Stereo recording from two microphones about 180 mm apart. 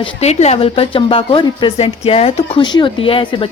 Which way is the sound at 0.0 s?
35° left (ahead or behind).